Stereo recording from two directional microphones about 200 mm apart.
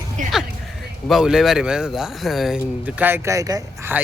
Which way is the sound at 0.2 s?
40° right (ahead or behind).